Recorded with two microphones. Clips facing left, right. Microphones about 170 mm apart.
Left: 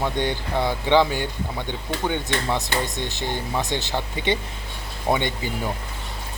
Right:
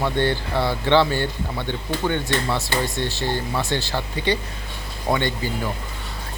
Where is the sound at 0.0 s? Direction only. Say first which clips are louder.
Right 3 dB; 15° left (ahead or behind).